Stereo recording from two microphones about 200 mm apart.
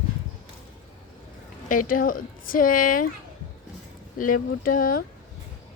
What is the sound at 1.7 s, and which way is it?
Speech, 40° left (ahead or behind).